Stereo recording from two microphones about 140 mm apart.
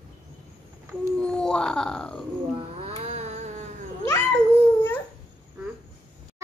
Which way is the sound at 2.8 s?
50° right (ahead or behind).